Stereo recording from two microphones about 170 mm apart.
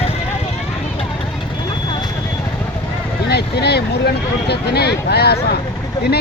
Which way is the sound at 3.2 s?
75° left (ahead or behind).